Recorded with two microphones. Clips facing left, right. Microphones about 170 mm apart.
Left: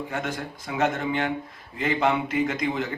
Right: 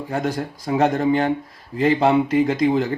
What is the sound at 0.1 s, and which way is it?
Speech, 35° right (ahead or behind).